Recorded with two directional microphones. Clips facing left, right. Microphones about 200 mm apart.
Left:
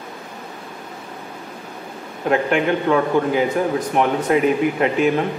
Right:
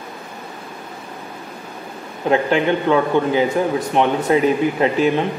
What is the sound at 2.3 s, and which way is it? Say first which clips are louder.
Speech: right 1 dB; 30° right (ahead or behind).